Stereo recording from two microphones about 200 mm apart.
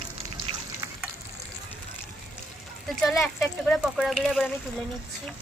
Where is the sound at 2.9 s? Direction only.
Centre (ahead or behind).